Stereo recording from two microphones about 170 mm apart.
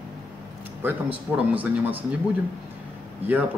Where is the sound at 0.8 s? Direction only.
10° right (ahead or behind).